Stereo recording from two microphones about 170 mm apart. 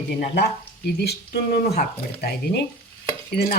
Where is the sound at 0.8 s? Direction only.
70° left (ahead or behind).